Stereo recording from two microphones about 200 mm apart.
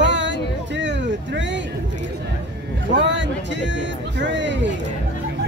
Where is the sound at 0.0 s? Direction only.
65° right (ahead or behind).